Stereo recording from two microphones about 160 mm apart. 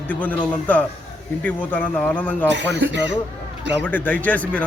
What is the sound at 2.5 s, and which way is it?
Speech, 90° right.